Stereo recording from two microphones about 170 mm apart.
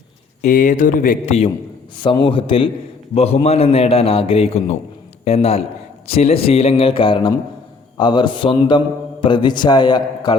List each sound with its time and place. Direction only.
0.4 s speech: 50° left (ahead or behind)
2.0 s a man's voice: 30° left (ahead or behind)